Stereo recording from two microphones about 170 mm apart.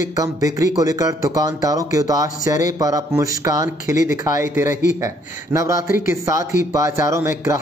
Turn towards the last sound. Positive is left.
turn(degrees=-15)  # may be behind; listen again after turning